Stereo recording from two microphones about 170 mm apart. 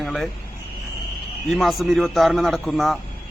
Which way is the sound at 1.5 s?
Centre (ahead or behind).